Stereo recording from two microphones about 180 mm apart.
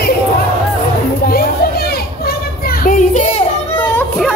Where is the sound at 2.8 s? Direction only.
40° left (ahead or behind).